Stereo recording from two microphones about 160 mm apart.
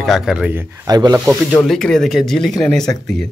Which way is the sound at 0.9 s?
25° right (ahead or behind).